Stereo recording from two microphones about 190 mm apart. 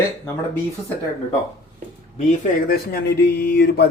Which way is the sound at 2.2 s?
50° left (ahead or behind).